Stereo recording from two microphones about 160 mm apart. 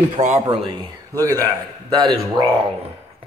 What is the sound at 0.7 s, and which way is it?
Speech, 20° right (ahead or behind).